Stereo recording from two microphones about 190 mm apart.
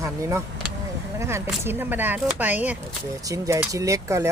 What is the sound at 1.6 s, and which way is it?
Speech, 10° right (ahead or behind).